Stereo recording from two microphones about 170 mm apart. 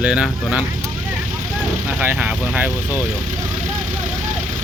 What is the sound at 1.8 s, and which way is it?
Speech, 10° right (ahead or behind).